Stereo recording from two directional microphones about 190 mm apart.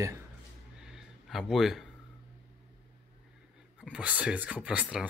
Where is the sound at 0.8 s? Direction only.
5° right (ahead or behind).